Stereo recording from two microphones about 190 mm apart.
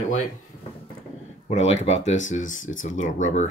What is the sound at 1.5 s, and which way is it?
Speech, 35° left (ahead or behind).